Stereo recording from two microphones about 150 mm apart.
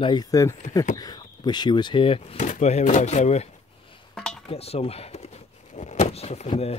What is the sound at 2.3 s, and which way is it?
Speech, 55° left (ahead or behind).